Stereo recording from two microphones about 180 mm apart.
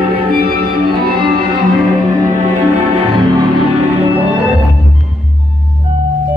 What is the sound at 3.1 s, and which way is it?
Music, 20° right (ahead or behind).